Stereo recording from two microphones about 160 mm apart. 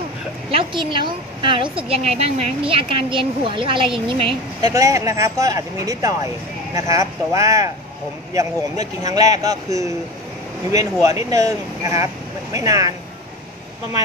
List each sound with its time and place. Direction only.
0.5 s a woman's voice: 35° right (ahead or behind)
4.6 s speech: 20° right (ahead or behind)